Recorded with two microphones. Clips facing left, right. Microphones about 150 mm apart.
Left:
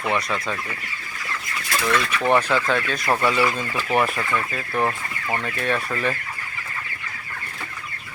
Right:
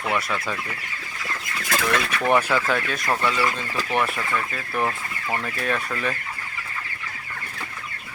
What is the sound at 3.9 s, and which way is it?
Speech, centre (ahead or behind).